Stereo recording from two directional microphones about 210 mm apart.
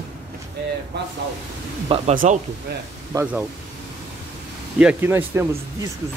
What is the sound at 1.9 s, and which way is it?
Speech, 25° right (ahead or behind).